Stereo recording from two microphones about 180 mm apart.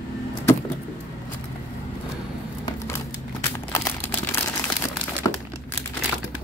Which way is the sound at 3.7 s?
15° left (ahead or behind).